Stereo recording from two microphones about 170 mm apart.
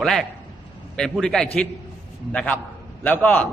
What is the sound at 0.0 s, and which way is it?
A man's voice, centre (ahead or behind).